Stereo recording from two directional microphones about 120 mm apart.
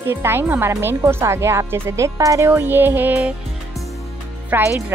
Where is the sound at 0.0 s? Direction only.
20° right (ahead or behind).